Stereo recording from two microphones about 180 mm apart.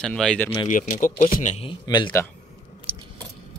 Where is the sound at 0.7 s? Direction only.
45° left (ahead or behind).